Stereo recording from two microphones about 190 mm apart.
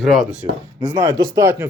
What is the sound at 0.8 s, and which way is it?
Speech, 10° right (ahead or behind).